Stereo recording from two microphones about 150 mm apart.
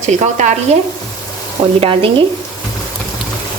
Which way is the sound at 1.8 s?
40° right (ahead or behind).